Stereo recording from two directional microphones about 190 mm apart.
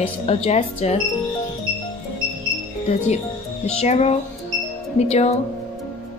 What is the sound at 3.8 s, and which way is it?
Speech, 35° left (ahead or behind).